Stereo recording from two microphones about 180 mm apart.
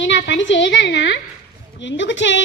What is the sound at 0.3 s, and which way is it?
A woman's voice, 90° left.